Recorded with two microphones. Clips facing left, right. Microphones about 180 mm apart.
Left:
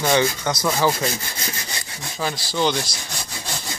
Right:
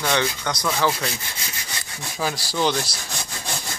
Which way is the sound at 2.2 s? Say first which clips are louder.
Left 1 dB; 5° right (ahead or behind).